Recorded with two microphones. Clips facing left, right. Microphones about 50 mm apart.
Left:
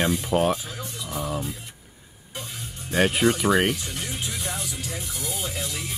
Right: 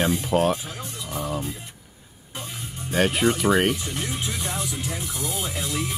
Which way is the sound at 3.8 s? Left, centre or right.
Right.